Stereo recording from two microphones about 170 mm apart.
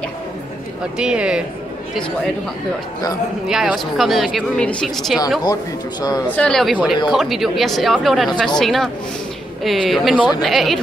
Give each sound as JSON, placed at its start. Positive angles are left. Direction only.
{"t": 0.9, "sound": "speech", "side_deg": -5}
{"t": 3.4, "sound": "speech", "side_deg": -5}
{"t": 5.4, "sound": "a man's voice", "side_deg": 25}
{"t": 6.2, "sound": "speech", "side_deg": 5}